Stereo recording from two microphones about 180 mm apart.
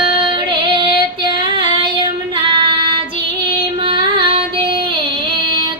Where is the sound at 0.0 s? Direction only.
25° right (ahead or behind).